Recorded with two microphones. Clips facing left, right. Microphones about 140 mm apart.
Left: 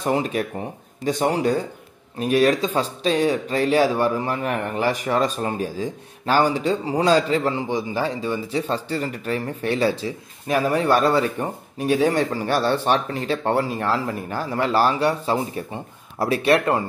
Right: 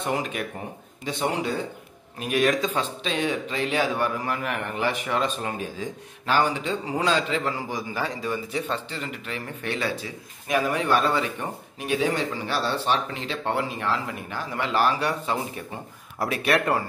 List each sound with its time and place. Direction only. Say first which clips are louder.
0.0 s a man's voice: left 5 dB; 35° left (ahead or behind)
7.5 s speech: left 6 dB; 25° left (ahead or behind)